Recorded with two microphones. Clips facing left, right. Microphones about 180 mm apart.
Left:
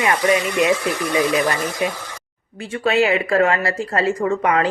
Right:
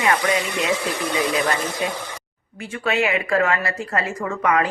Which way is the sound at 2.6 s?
30° left (ahead or behind).